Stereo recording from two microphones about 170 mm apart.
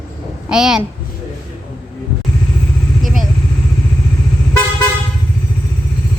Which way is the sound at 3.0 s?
Centre (ahead or behind).